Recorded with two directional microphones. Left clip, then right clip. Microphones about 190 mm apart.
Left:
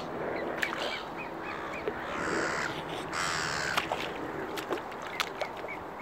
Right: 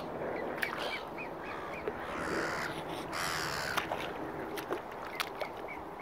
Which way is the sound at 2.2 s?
55° right (ahead or behind).